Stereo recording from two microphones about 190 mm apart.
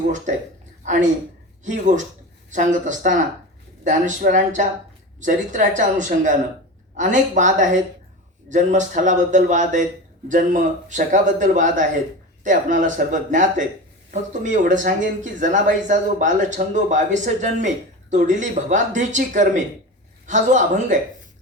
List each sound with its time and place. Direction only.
1.6 s speech: 40° right (ahead or behind)